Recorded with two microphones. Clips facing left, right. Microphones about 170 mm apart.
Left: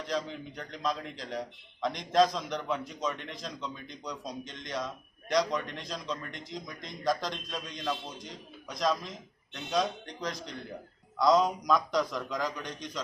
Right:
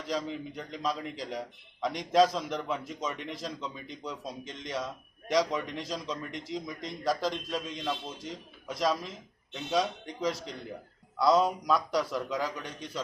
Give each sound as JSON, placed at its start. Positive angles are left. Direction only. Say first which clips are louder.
{"t": 0.1, "sound": "a man's voice", "louder": "right 2 dB", "side_deg": -5}